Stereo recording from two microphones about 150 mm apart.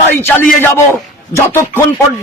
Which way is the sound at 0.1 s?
15° left (ahead or behind).